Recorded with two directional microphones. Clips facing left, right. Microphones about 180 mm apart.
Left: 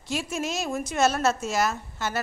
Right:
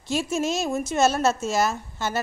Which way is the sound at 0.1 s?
25° right (ahead or behind).